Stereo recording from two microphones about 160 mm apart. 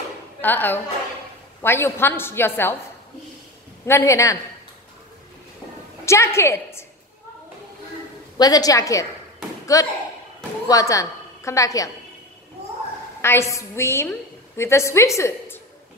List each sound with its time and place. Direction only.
0.4 s a woman's voice: 10° left (ahead or behind)
3.8 s a woman's voice: 15° left (ahead or behind)
6.0 s a woman's voice: 20° left (ahead or behind)
8.4 s a woman's voice: 25° left (ahead or behind)
13.2 s a woman's voice: 15° left (ahead or behind)